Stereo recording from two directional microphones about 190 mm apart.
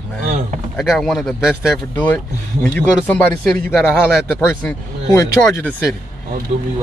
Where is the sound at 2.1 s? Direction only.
10° left (ahead or behind).